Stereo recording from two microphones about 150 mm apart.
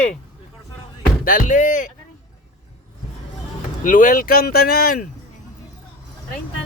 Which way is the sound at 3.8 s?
60° left (ahead or behind).